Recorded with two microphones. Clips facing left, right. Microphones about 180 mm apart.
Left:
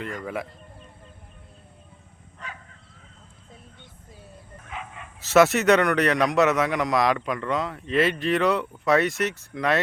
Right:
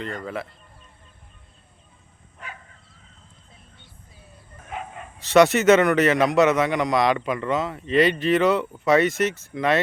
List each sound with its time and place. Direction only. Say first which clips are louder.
0.2 s speech: even; 15° left (ahead or behind)
5.2 s a man's voice: right 2 dB; centre (ahead or behind)